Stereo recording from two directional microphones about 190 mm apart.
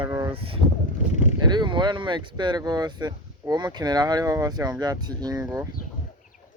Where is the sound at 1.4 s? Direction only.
25° right (ahead or behind).